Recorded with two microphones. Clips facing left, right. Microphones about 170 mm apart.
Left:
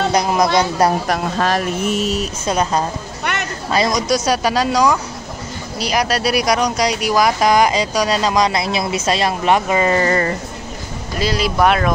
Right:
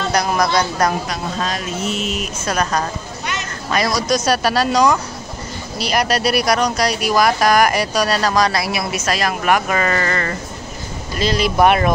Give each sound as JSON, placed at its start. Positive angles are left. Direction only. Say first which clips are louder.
{"t": 0.1, "sound": "speech", "louder": "left 2 dB", "side_deg": 20}
{"t": 1.0, "sound": "speech", "louder": "left 5 dB", "side_deg": 60}
{"t": 2.4, "sound": "speech", "louder": "left 1 dB", "side_deg": 25}
{"t": 3.3, "sound": "a sound", "louder": "left 3 dB", "side_deg": 60}
{"t": 3.7, "sound": "speech", "louder": "left 1 dB", "side_deg": 20}
{"t": 11.5, "sound": "speech", "louder": "right 2 dB", "side_deg": -5}